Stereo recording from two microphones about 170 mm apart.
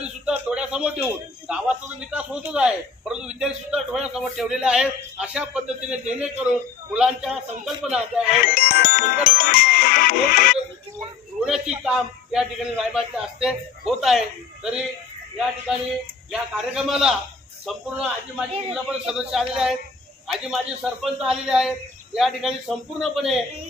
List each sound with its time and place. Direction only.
0.0 s a sound: 5° right (ahead or behind)
1.0 s a man's voice: 5° right (ahead or behind)
8.5 s music: 60° left (ahead or behind)
11.4 s a man's voice: 5° right (ahead or behind)
16.3 s a man's voice: 5° right (ahead or behind)